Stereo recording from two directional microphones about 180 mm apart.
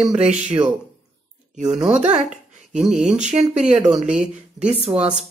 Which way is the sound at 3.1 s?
40° right (ahead or behind).